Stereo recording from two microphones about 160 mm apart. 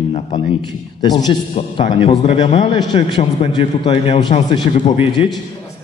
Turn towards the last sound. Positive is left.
turn(degrees=30)  # may be behind; listen again after turning